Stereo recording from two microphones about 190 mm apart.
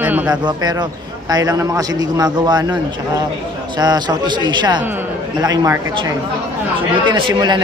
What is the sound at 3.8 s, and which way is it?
A man's voice, 20° right (ahead or behind).